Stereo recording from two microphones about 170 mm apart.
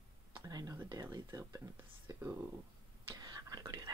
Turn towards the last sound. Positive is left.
turn(degrees=-25)  # may be behind; listen again after turning